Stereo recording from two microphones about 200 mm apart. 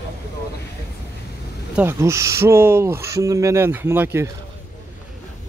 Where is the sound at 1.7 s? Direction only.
15° right (ahead or behind).